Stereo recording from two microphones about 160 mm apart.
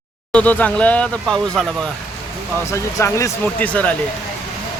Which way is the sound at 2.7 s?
20° left (ahead or behind).